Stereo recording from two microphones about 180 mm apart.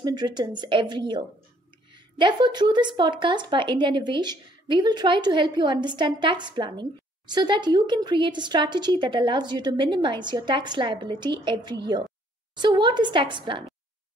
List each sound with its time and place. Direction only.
0.0 s a woman's voice: 25° right (ahead or behind)